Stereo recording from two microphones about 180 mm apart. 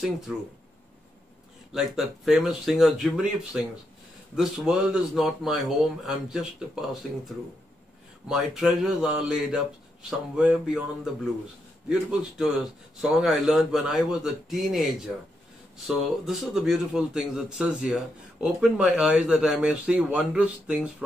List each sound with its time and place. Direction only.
1.7 s speech: centre (ahead or behind)
11.9 s speech: 5° right (ahead or behind)
16.3 s speech: centre (ahead or behind)